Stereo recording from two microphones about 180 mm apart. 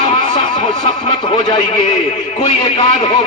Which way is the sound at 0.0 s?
25° left (ahead or behind).